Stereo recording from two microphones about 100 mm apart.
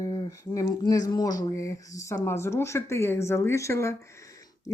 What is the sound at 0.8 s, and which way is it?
Speech, 40° left (ahead or behind).